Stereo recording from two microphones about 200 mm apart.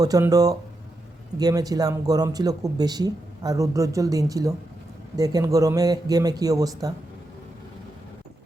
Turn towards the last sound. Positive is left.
turn(degrees=-15)  # may be behind; listen again after turning